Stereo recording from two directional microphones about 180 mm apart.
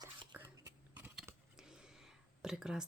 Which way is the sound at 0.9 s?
10° right (ahead or behind).